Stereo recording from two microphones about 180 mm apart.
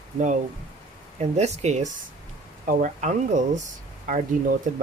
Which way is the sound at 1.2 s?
40° right (ahead or behind).